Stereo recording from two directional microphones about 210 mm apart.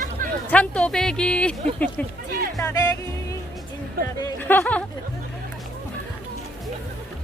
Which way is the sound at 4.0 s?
45° right (ahead or behind).